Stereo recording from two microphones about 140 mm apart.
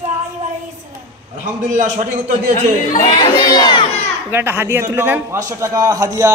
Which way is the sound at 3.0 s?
35° left (ahead or behind).